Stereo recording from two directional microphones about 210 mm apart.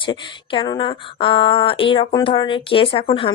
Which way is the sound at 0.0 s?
20° left (ahead or behind).